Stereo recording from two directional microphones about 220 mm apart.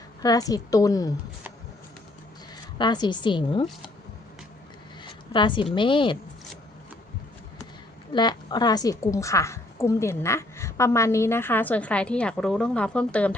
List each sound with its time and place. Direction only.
0.2 s a woman's voice: 15° left (ahead or behind)
2.7 s a woman's voice: 20° left (ahead or behind)
5.0 s a sound: 20° left (ahead or behind)
5.7 s a woman's voice: 20° left (ahead or behind)
8.1 s a woman's voice: 20° left (ahead or behind)